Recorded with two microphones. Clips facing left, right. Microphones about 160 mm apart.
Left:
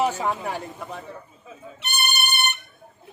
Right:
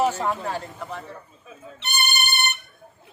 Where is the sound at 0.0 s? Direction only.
15° left (ahead or behind).